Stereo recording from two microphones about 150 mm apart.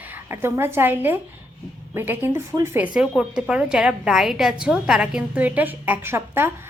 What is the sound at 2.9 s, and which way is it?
A woman's voice, 5° right (ahead or behind).